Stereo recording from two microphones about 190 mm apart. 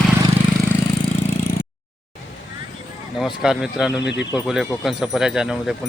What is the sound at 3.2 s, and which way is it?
Speech, centre (ahead or behind).